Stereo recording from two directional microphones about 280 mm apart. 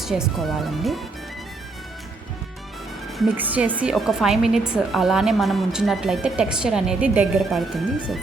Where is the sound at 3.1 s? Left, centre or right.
Centre.